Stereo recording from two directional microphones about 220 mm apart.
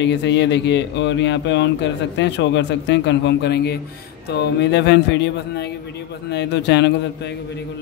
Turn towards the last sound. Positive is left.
turn(degrees=50)  # may be behind; listen again after turning